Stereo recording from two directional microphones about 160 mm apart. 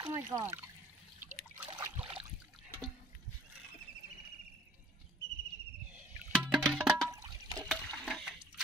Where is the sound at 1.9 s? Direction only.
35° right (ahead or behind).